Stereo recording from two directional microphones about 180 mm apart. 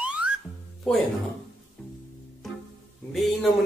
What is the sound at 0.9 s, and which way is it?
Speech, centre (ahead or behind).